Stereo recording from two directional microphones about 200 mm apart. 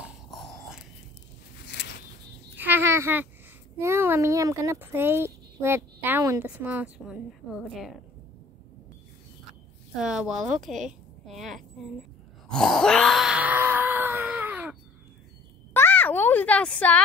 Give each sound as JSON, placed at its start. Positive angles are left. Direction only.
{"t": 0.0, "sound": "dog", "side_deg": 0}
{"t": 1.7, "sound": "a sound", "side_deg": 55}
{"t": 2.5, "sound": "a sound", "side_deg": -10}
{"t": 3.8, "sound": "speech", "side_deg": -10}
{"t": 9.9, "sound": "speech", "side_deg": -5}
{"t": 12.4, "sound": "wail", "side_deg": 0}
{"t": 15.7, "sound": "speech", "side_deg": 10}